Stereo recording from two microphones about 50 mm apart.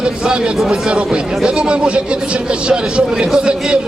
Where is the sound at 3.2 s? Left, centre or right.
Centre.